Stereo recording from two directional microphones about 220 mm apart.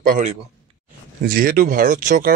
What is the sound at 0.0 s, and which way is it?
A man's voice, 35° right (ahead or behind).